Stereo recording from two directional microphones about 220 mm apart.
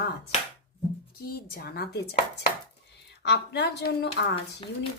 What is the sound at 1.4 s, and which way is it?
Speech, 40° left (ahead or behind).